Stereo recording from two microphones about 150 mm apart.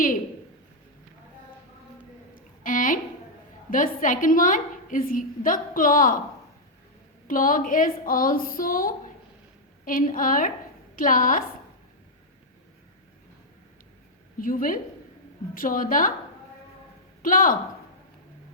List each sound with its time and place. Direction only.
2.3 s a sound: 60° left (ahead or behind)
3.7 s a woman's voice: 65° left (ahead or behind)
7.3 s a woman's voice: 65° left (ahead or behind)
14.3 s a woman's voice: 70° left (ahead or behind)
17.2 s a woman's voice: 65° left (ahead or behind)